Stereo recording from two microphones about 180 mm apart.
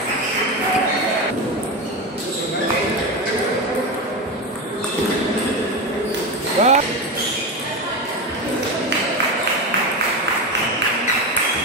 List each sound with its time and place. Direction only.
6.6 s basketball bounce: 40° right (ahead or behind)